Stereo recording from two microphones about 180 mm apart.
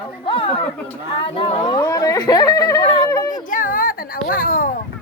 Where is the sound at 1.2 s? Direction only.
25° left (ahead or behind).